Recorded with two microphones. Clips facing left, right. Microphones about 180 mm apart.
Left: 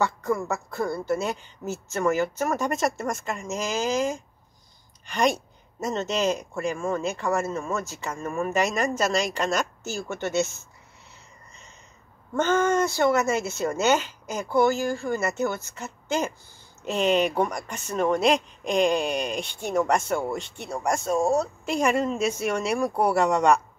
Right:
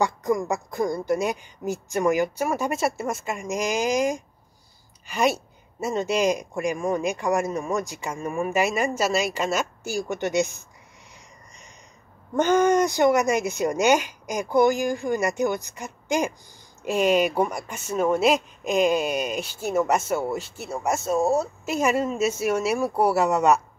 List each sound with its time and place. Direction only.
0.0 s speech: 15° right (ahead or behind)
12.4 s speech: 15° right (ahead or behind)